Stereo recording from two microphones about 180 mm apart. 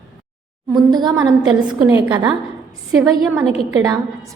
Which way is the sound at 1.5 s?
5° right (ahead or behind).